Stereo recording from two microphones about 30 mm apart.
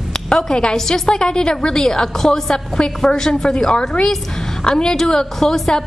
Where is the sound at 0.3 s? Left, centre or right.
Left.